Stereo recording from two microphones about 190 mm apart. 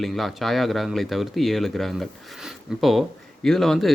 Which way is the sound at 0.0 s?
Centre (ahead or behind).